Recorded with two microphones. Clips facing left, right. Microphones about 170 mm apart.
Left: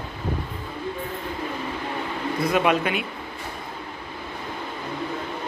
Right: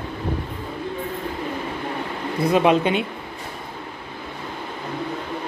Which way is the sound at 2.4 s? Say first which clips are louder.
Right 4 dB; 30° right (ahead or behind).